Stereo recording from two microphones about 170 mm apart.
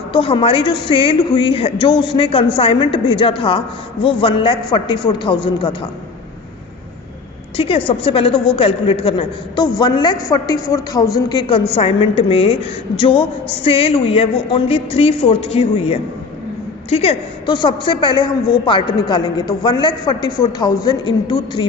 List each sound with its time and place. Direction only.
0.1 s a woman's voice: 30° left (ahead or behind)
7.5 s a woman's voice: 35° left (ahead or behind)